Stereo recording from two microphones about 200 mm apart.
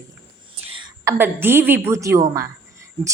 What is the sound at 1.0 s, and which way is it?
A woman's voice, 10° right (ahead or behind).